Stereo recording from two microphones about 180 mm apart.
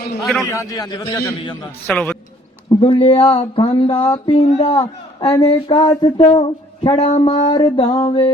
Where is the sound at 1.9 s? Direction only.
5° left (ahead or behind).